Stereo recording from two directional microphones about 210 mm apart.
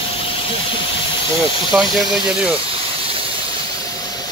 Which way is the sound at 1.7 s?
Centre (ahead or behind).